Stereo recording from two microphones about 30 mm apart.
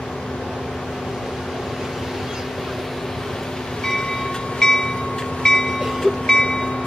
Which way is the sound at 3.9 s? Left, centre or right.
Centre.